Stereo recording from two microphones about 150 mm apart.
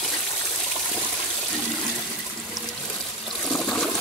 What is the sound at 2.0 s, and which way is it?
Water, centre (ahead or behind).